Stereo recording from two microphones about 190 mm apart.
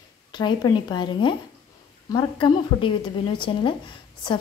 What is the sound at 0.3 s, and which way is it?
A woman's voice, 25° left (ahead or behind).